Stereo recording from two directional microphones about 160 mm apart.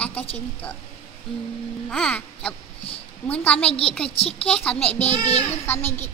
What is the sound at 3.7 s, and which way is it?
Speech, 35° left (ahead or behind).